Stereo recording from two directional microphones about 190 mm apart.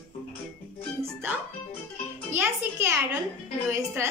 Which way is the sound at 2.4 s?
15° right (ahead or behind).